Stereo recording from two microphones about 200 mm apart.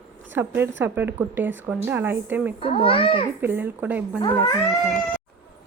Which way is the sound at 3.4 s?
10° right (ahead or behind).